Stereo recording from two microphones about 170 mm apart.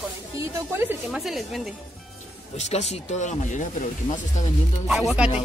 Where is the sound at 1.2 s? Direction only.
Centre (ahead or behind).